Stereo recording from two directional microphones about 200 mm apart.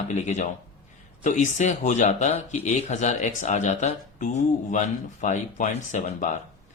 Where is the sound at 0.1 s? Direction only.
35° left (ahead or behind).